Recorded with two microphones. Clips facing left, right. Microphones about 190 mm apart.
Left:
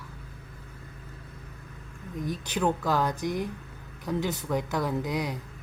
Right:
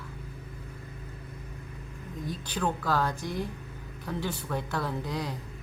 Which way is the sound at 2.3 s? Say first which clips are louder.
Left 4 dB; 10° left (ahead or behind).